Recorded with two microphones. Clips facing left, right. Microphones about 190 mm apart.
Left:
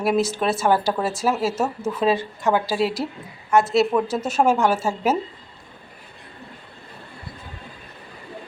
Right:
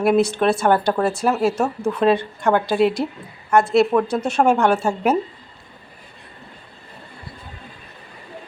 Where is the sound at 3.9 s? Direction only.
5° left (ahead or behind).